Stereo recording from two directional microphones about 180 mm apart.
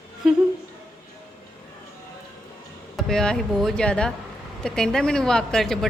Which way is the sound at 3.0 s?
5° left (ahead or behind).